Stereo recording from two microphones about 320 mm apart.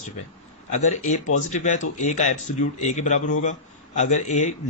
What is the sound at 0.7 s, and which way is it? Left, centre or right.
Speech, left.